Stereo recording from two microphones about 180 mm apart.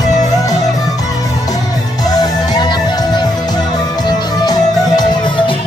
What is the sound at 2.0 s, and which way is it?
Music, 20° left (ahead or behind).